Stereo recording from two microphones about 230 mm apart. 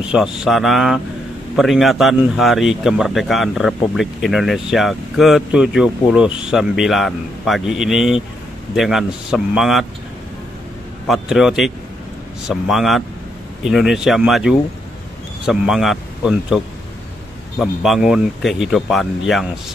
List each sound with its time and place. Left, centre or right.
0.1 s speech: centre
11.1 s speech: centre